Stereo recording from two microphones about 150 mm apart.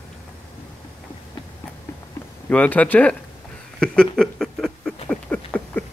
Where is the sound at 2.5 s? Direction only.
10° left (ahead or behind).